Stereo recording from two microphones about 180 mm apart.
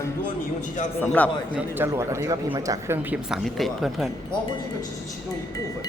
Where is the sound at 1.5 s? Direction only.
15° right (ahead or behind).